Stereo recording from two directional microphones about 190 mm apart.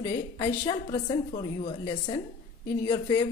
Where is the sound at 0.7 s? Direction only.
25° left (ahead or behind).